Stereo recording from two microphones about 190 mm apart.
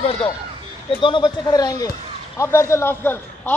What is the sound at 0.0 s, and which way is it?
A man's voice, 30° left (ahead or behind).